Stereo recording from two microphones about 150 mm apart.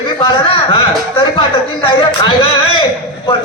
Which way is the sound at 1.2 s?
30° left (ahead or behind).